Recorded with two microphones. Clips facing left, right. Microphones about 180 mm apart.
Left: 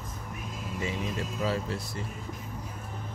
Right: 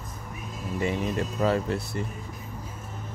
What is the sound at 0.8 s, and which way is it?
Speech, 55° right (ahead or behind).